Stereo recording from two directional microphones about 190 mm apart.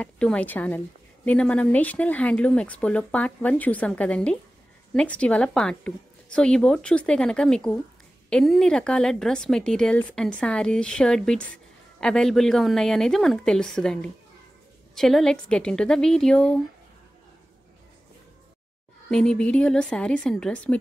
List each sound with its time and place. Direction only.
0.0 s a woman's voice: 5° left (ahead or behind)
19.0 s a woman's voice: 5° left (ahead or behind)